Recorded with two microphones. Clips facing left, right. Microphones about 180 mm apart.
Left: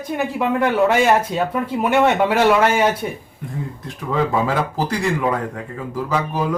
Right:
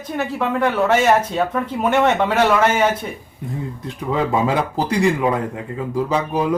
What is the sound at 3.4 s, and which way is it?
Speech, 20° right (ahead or behind).